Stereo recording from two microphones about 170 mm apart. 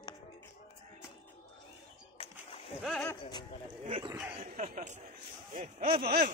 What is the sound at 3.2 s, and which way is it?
Speech, 25° left (ahead or behind).